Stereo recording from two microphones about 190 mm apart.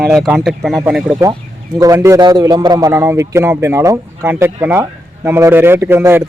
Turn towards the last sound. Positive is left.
turn(degrees=-10)  # may be behind; listen again after turning